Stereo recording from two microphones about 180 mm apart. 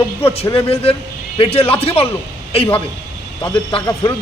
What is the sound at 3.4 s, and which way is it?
Speech, 25° left (ahead or behind).